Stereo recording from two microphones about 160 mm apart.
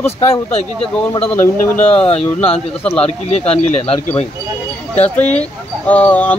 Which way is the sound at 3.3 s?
45° left (ahead or behind).